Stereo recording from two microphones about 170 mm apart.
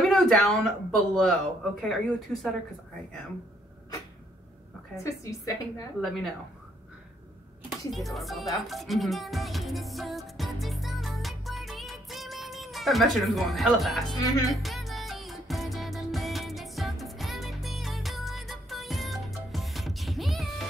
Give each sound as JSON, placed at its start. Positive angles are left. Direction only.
{"t": 0.0, "sound": "speech", "side_deg": 0}
{"t": 5.0, "sound": "a woman's voice", "side_deg": 20}
{"t": 5.9, "sound": "speech", "side_deg": 0}
{"t": 7.9, "sound": "speech", "side_deg": 0}
{"t": 8.5, "sound": "music", "side_deg": 0}
{"t": 14.2, "sound": "a woman's voice", "side_deg": 20}
{"t": 14.5, "sound": "music", "side_deg": 0}